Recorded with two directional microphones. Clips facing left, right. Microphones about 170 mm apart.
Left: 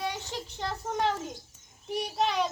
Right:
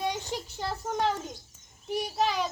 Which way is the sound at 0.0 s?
15° right (ahead or behind).